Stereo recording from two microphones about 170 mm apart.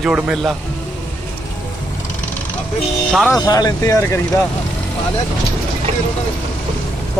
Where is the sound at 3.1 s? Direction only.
Centre (ahead or behind).